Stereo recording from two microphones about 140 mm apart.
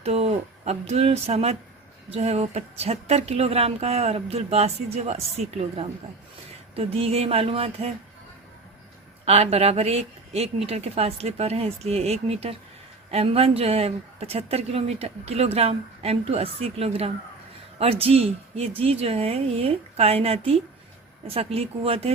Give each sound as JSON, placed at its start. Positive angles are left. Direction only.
{"t": 0.0, "sound": "speech", "side_deg": -50}
{"t": 6.7, "sound": "speech", "side_deg": -45}
{"t": 9.2, "sound": "speech", "side_deg": -45}